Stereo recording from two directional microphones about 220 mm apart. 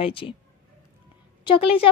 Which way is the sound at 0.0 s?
25° left (ahead or behind).